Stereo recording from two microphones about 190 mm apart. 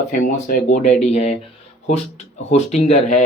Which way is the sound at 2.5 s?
35° left (ahead or behind).